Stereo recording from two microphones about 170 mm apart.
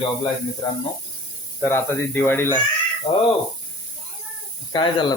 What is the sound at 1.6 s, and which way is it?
Speech, 10° left (ahead or behind).